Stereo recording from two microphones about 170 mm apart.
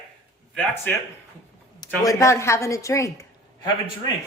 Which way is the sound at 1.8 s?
20° left (ahead or behind).